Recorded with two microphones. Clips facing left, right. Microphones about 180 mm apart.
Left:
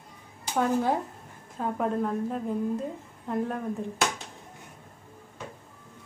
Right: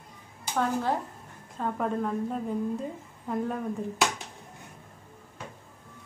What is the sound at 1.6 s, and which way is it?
A woman's voice, 5° left (ahead or behind).